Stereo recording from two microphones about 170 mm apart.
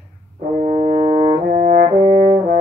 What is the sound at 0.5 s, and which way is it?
Brass instrument, 35° right (ahead or behind).